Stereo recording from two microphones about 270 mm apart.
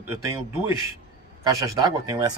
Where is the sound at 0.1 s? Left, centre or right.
Centre.